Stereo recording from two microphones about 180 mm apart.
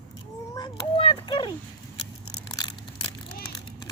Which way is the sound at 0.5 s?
25° left (ahead or behind).